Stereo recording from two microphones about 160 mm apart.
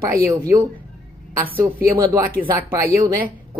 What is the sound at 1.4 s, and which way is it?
Speech, 10° right (ahead or behind).